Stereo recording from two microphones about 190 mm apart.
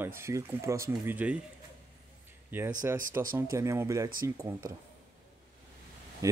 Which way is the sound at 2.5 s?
10° right (ahead or behind).